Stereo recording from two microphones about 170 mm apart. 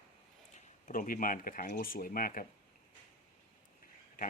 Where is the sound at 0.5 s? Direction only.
50° left (ahead or behind).